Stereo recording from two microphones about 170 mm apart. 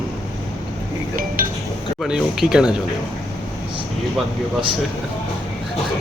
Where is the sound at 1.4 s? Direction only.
55° right (ahead or behind).